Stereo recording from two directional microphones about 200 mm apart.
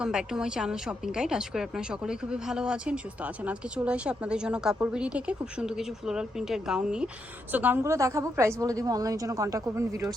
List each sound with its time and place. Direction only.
0.0 s a woman's voice: 5° right (ahead or behind)